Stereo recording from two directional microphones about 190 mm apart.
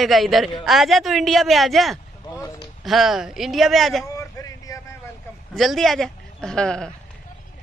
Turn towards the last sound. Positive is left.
turn(degrees=5)  # may be behind; listen again after turning